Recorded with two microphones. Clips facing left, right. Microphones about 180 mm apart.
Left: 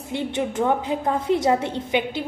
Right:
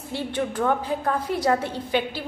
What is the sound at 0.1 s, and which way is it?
A woman's voice, 20° left (ahead or behind).